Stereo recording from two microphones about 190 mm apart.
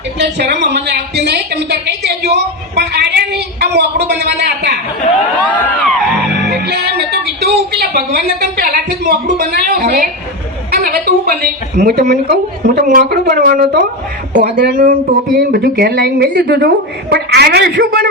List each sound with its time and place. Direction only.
0.2 s a woman's voice: 65° right (ahead or behind)
5.5 s a sound: 10° left (ahead or behind)
6.4 s music: 60° right (ahead or behind)
7.4 s a woman's voice: 55° right (ahead or behind)
10.7 s a sound: 50° right (ahead or behind)
11.8 s a woman's voice: 55° right (ahead or behind)